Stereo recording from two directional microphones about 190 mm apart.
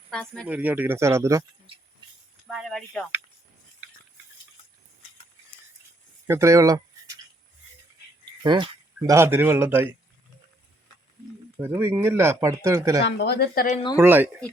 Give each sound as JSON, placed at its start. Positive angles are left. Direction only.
{"t": 0.1, "sound": "speech", "side_deg": 5}
{"t": 0.4, "sound": "speech", "side_deg": -10}
{"t": 2.5, "sound": "speech", "side_deg": 0}
{"t": 6.2, "sound": "speech", "side_deg": -15}
{"t": 8.2, "sound": "a man's voice", "side_deg": -25}
{"t": 11.6, "sound": "speech", "side_deg": -10}
{"t": 13.1, "sound": "speech", "side_deg": 60}
{"t": 13.9, "sound": "speech", "side_deg": -10}